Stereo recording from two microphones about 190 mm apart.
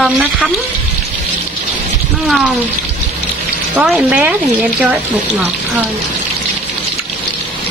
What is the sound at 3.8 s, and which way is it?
Speech, 5° right (ahead or behind).